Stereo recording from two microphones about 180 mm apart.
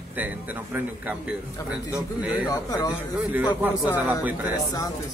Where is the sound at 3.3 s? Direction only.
10° right (ahead or behind).